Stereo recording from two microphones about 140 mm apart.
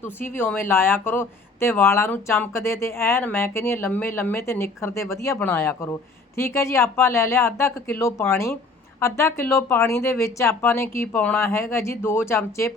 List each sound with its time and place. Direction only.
0.2 s speech: 15° left (ahead or behind)